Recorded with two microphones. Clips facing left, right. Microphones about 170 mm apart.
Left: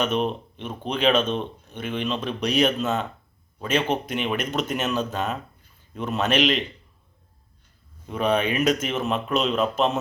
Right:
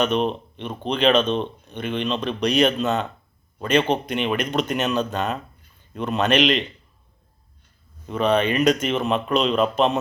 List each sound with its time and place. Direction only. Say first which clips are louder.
0.0 s speech: right 3 dB; 5° left (ahead or behind)
8.0 s speech: right 3 dB; 10° left (ahead or behind)